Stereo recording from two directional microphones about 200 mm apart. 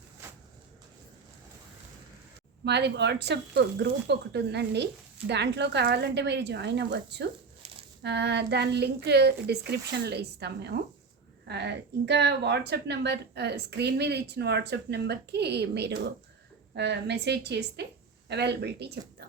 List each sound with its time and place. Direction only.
2.6 s a woman's voice: 60° right (ahead or behind)